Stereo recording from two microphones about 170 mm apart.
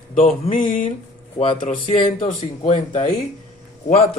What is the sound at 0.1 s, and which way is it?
Speech, 50° left (ahead or behind).